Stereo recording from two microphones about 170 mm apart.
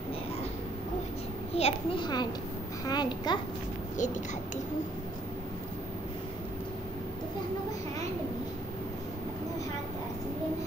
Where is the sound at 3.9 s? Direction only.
45° left (ahead or behind).